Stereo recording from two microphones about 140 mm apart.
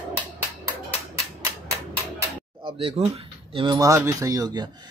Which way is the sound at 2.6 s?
40° right (ahead or behind).